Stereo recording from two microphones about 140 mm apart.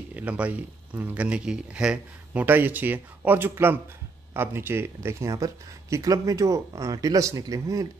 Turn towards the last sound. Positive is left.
turn(degrees=-25)  # may be behind; listen again after turning